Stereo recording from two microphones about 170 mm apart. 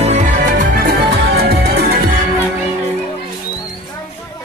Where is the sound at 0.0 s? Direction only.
45° right (ahead or behind).